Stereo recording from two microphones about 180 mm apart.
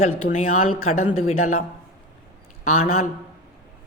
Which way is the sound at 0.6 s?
30° left (ahead or behind).